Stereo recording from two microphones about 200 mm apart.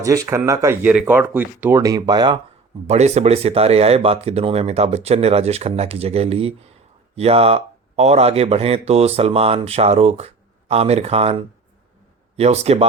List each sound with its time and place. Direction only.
0.0 s speech: 15° right (ahead or behind)
2.8 s speech: 35° right (ahead or behind)